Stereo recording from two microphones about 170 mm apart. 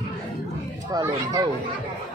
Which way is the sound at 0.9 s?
20° right (ahead or behind).